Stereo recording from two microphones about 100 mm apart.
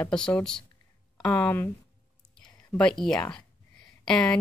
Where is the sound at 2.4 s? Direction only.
5° left (ahead or behind).